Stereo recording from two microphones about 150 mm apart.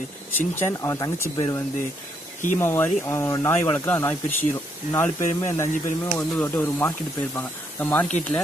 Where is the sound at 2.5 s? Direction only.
15° left (ahead or behind).